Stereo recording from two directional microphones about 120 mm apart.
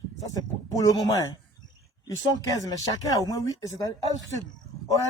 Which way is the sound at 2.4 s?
30° left (ahead or behind).